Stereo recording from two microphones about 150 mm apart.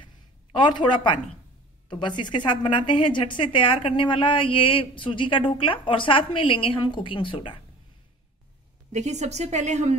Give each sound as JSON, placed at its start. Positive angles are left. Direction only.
{"t": 0.0, "sound": "a sound", "side_deg": 30}
{"t": 1.9, "sound": "a woman's voice", "side_deg": 30}
{"t": 8.9, "sound": "a woman's voice", "side_deg": -50}